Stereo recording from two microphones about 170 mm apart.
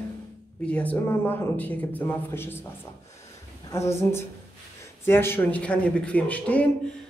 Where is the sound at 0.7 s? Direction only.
10° left (ahead or behind).